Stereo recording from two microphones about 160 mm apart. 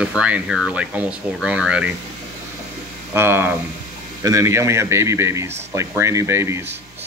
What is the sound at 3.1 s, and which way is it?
Speech, 15° right (ahead or behind).